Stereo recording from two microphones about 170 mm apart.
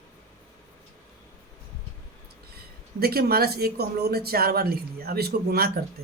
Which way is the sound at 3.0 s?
65° right (ahead or behind).